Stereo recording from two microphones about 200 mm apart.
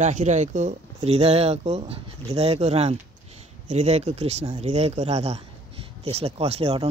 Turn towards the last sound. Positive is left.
turn(degrees=-30)  # may be behind; listen again after turning